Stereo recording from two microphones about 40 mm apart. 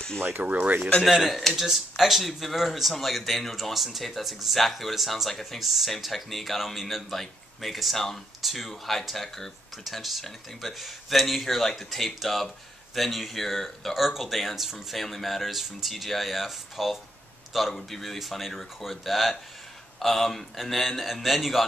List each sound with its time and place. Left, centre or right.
0.4 s speech: right
1.0 s a man's voice: centre